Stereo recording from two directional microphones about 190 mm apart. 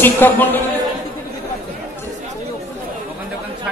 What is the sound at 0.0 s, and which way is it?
Speech, 10° left (ahead or behind).